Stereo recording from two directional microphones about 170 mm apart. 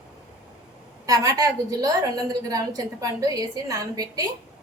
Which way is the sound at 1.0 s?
20° right (ahead or behind).